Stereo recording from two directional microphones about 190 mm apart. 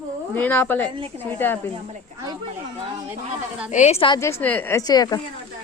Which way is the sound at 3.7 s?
35° left (ahead or behind).